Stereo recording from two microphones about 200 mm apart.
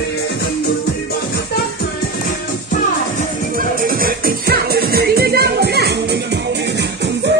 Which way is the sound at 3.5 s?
45° right (ahead or behind).